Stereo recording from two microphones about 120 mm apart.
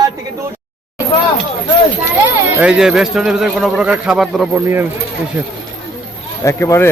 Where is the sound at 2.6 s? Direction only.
5° right (ahead or behind).